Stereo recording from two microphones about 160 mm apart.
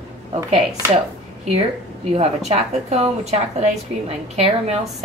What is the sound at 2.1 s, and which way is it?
Speech, 40° right (ahead or behind).